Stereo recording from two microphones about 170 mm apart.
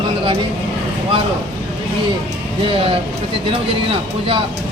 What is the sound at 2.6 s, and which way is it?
Speech, 30° right (ahead or behind).